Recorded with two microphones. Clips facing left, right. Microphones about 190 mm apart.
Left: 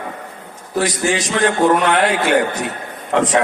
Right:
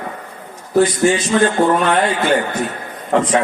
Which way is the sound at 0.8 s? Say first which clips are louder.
Right 4 dB; 85° left.